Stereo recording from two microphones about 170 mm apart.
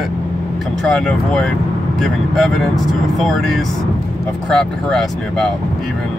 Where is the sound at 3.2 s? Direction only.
Centre (ahead or behind).